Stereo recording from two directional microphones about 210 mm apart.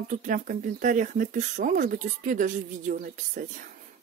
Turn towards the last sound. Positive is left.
turn(degrees=-40)  # may be behind; listen again after turning